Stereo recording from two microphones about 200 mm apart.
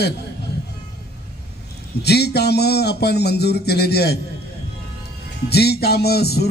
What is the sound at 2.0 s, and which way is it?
Speech, 55° left (ahead or behind).